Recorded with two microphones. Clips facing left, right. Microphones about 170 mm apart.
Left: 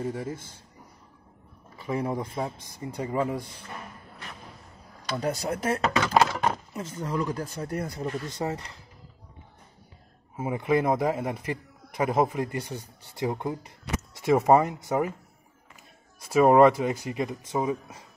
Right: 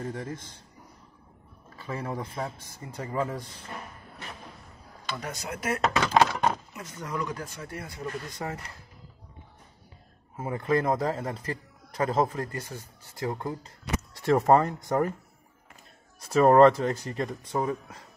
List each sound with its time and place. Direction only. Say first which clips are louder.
0.0 s a man's voice: left 3 dB; 10° left (ahead or behind)
1.8 s a man's voice: left 5 dB; 15° left (ahead or behind)
5.1 s speech: left 8 dB; 35° left (ahead or behind)
8.0 s speech: left 4 dB; 20° left (ahead or behind)
10.3 s a man's voice: left 2 dB; 10° left (ahead or behind)
16.3 s a man's voice: even; 10° left (ahead or behind)